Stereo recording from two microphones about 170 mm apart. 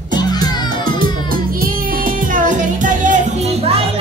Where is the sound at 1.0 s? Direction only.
55° right (ahead or behind).